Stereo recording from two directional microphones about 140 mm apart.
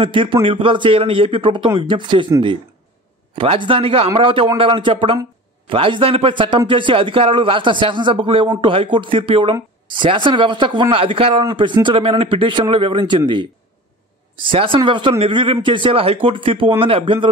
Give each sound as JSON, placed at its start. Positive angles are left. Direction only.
{"t": 0.0, "sound": "speech", "side_deg": -40}
{"t": 3.3, "sound": "speech", "side_deg": -40}